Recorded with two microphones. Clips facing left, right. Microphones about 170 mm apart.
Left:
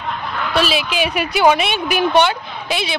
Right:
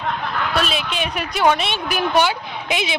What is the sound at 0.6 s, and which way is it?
A woman's voice, 5° left (ahead or behind).